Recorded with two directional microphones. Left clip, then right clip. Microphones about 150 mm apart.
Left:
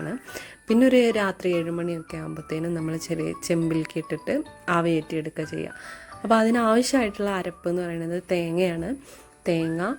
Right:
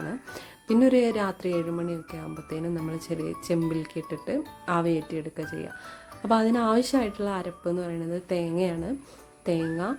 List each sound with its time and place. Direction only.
0.0 s speech: 15° left (ahead or behind)